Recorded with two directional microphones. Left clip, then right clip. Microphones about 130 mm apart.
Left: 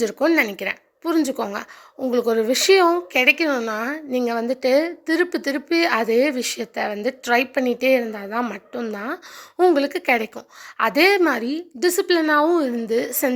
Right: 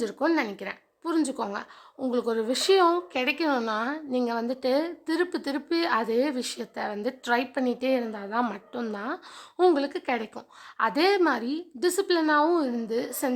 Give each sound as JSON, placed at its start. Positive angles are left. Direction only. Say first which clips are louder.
{"t": 0.0, "sound": "a woman's voice", "louder": "left 7 dB", "side_deg": 25}
{"t": 8.4, "sound": "a woman's voice", "louder": "left 2 dB", "side_deg": 10}
{"t": 8.9, "sound": "a woman's voice", "louder": "left 5 dB", "side_deg": 20}